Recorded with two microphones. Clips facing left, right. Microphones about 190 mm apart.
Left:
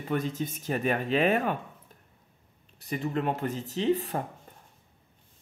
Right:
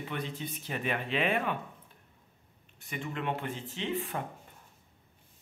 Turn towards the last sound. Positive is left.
turn(degrees=40)  # may be behind; listen again after turning